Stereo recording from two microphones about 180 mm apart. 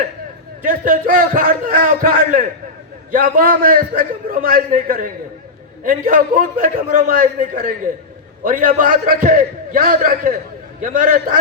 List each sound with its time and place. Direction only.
0.6 s a man's voice: 50° right (ahead or behind)